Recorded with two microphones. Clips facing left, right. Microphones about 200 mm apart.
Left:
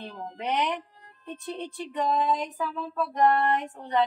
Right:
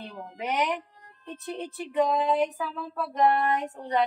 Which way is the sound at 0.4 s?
Centre (ahead or behind).